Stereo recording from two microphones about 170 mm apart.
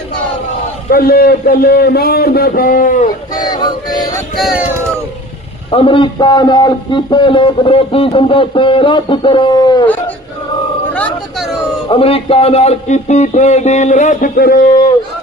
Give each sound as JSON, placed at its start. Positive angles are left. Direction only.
{"t": 0.9, "sound": "a man's voice", "side_deg": 60}
{"t": 3.4, "sound": "a man's voice", "side_deg": 25}
{"t": 5.7, "sound": "a man's voice", "side_deg": 30}
{"t": 10.9, "sound": "a sound", "side_deg": 5}
{"t": 11.9, "sound": "speech", "side_deg": 35}